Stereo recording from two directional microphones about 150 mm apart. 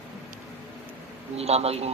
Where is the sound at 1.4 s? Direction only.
45° right (ahead or behind).